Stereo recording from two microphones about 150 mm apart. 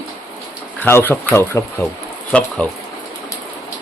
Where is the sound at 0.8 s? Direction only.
15° left (ahead or behind).